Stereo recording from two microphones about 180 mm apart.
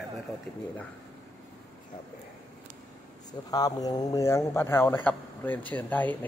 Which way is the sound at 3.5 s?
20° left (ahead or behind).